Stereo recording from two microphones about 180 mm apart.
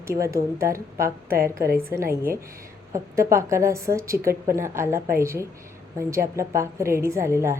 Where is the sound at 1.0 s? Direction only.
55° right (ahead or behind).